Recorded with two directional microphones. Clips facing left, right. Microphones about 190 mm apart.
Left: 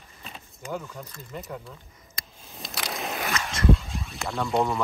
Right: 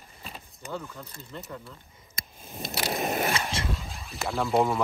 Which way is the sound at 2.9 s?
50° right (ahead or behind).